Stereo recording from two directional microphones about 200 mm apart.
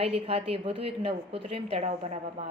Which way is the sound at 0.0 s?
30° right (ahead or behind).